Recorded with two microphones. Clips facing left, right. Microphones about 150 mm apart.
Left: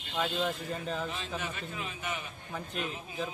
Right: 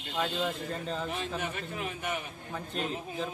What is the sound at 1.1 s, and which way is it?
A man's voice, 55° right (ahead or behind).